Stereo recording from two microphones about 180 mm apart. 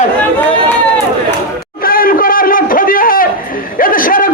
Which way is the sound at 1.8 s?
55° left (ahead or behind).